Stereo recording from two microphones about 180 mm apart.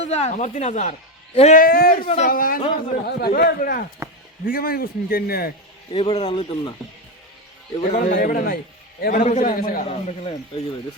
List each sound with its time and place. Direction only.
0.1 s a man's voice: 40° left (ahead or behind); by 2.0 s 55° left (ahead or behind)
2.0 s a man's voice: 40° left (ahead or behind); by 5.5 s 55° left (ahead or behind)
5.9 s speech: 30° left (ahead or behind)
7.8 s a man's voice: 45° left (ahead or behind)
9.9 s speech: 35° left (ahead or behind)